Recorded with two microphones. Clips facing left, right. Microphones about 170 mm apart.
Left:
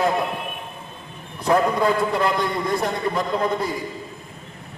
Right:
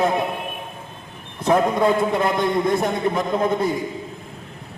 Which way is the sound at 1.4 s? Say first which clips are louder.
Right 1 dB; 20° right (ahead or behind).